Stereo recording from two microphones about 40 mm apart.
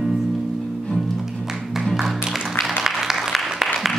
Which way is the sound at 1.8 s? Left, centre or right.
Centre.